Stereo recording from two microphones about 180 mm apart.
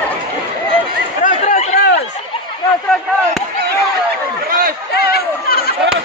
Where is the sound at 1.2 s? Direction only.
40° left (ahead or behind).